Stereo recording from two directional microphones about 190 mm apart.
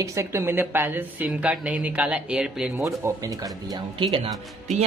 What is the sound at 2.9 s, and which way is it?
Speech, 15° right (ahead or behind).